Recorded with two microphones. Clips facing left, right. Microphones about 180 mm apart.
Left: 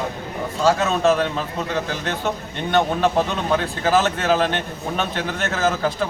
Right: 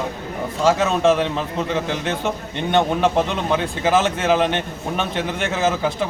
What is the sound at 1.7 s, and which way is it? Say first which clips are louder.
A man's voice: right 1 dB; 20° right (ahead or behind).